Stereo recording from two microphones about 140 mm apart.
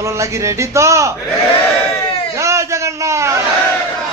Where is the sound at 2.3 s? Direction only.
20° right (ahead or behind).